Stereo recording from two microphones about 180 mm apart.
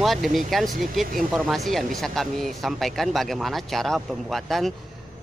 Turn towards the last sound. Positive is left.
turn(degrees=0)  # may be behind; listen again after turning